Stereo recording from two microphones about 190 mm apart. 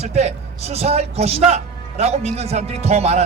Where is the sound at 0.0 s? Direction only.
35° right (ahead or behind).